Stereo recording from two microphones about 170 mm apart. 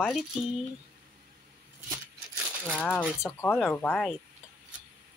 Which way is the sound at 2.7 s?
10° left (ahead or behind).